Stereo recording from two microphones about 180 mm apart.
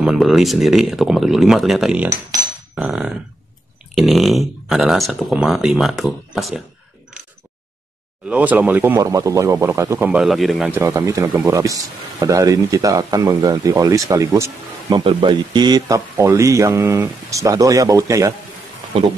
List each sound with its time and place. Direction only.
0.0 s speech: centre (ahead or behind)
2.7 s a sound: 5° right (ahead or behind)
3.9 s speech: centre (ahead or behind)
8.3 s speech: 10° right (ahead or behind)
10.7 s speech: 15° right (ahead or behind)